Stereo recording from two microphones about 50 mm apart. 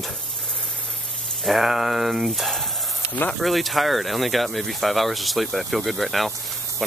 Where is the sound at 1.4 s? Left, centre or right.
Centre.